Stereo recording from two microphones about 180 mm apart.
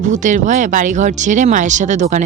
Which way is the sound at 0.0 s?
45° right (ahead or behind).